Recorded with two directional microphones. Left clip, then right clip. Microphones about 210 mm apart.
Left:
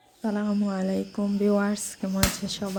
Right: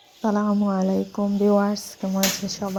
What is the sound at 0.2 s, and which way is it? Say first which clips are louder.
Speech: right 6 dB; 5° right (ahead or behind).